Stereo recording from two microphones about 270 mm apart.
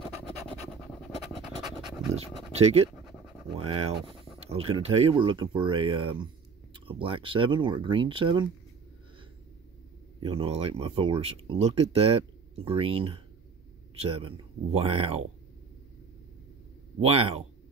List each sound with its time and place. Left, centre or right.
0.0 s scratch: centre
2.0 s pant: right
2.9 s scratch: centre
3.5 s speech: right
10.2 s speech: centre
17.0 s speech: right